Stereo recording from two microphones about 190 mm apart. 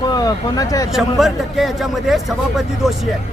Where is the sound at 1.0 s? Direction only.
Centre (ahead or behind).